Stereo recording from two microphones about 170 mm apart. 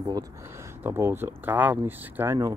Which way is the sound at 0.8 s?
15° right (ahead or behind).